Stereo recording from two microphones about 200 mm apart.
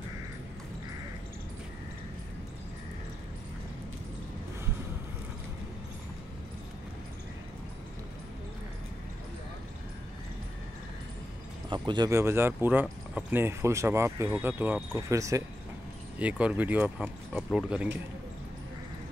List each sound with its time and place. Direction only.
11.7 s speech: 20° right (ahead or behind); by 17.8 s 5° right (ahead or behind)